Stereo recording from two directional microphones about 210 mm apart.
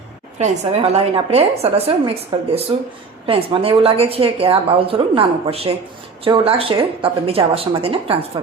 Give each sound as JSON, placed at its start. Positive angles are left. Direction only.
{"t": 0.3, "sound": "a woman's voice", "side_deg": -30}